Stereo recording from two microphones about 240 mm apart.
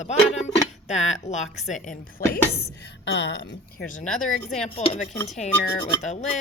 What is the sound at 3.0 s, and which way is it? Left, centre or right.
Speech, left.